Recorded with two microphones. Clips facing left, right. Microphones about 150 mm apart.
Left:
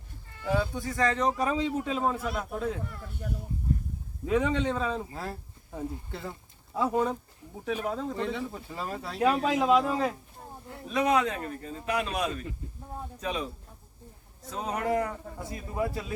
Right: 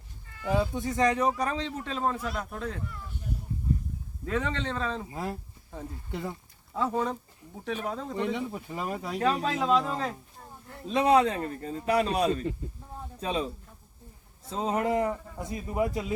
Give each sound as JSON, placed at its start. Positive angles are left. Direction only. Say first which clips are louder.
{"t": 0.8, "sound": "a man's voice", "louder": "right 2 dB", "side_deg": -20}
{"t": 1.4, "sound": "a man's voice", "louder": "left 3 dB", "side_deg": 5}
{"t": 4.3, "sound": "a man's voice", "louder": "left 4 dB", "side_deg": 10}
{"t": 5.1, "sound": "speech", "louder": "right 3 dB", "side_deg": -15}
{"t": 6.7, "sound": "a man's voice", "louder": "left 2 dB", "side_deg": 10}
{"t": 8.1, "sound": "speech", "louder": "right 2 dB", "side_deg": -15}
{"t": 9.1, "sound": "a man's voice", "louder": "left 3 dB", "side_deg": 10}
{"t": 10.8, "sound": "a man's voice", "louder": "right 3 dB", "side_deg": -30}
{"t": 14.5, "sound": "a man's voice", "louder": "right 2 dB", "side_deg": -25}